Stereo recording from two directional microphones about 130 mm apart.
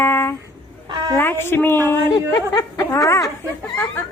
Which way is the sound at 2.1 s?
30° left (ahead or behind).